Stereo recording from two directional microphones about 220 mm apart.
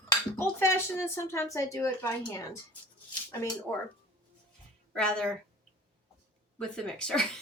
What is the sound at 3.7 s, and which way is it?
Speech, 10° left (ahead or behind).